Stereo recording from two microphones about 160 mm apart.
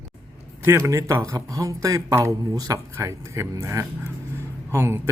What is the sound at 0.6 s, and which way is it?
A man's voice, 15° right (ahead or behind).